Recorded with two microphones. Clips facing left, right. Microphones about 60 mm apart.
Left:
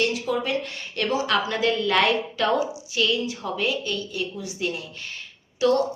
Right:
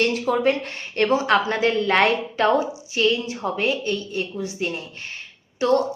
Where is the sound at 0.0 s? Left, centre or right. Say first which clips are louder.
Right 5 dB; right.